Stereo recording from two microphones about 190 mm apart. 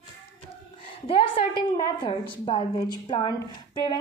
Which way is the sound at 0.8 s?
30° left (ahead or behind).